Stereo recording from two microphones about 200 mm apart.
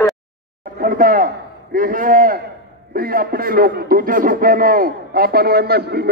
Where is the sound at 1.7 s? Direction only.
45° right (ahead or behind).